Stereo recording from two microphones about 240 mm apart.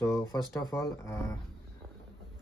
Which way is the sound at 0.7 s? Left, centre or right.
Centre.